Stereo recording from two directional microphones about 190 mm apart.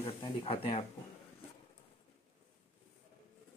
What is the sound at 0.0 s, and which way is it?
Speech, 20° left (ahead or behind).